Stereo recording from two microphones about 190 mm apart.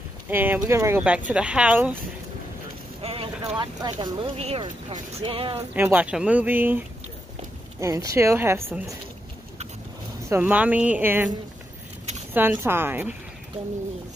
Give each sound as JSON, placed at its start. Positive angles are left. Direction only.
{"t": 0.3, "sound": "speech", "side_deg": -10}
{"t": 3.0, "sound": "speech", "side_deg": -30}
{"t": 5.8, "sound": "speech", "side_deg": -10}
{"t": 7.8, "sound": "speech", "side_deg": -15}
{"t": 10.3, "sound": "speech", "side_deg": -10}
{"t": 12.4, "sound": "speech", "side_deg": -10}